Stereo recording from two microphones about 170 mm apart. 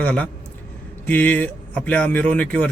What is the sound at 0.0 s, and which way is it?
Speech, 10° left (ahead or behind).